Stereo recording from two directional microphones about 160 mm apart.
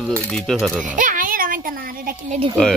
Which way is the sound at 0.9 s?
55° right (ahead or behind).